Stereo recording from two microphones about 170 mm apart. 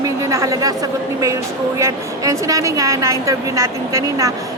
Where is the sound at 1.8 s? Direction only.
15° right (ahead or behind).